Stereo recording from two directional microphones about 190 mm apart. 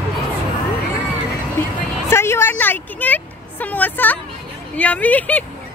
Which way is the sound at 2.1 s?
15° left (ahead or behind).